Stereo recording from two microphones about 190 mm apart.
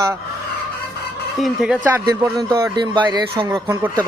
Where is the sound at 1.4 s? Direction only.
5° right (ahead or behind).